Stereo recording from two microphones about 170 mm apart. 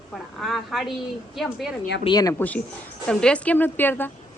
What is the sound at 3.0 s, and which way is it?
A woman's voice, 5° left (ahead or behind).